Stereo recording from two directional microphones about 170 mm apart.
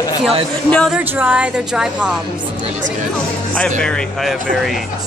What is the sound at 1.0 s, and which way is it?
Speech, 10° right (ahead or behind).